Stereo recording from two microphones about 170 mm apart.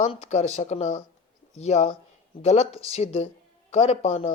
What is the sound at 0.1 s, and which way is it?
Speech, 40° left (ahead or behind).